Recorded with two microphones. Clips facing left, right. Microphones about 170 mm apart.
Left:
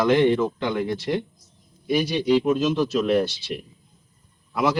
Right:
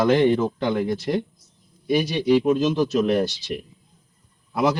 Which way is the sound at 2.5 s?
40° right (ahead or behind).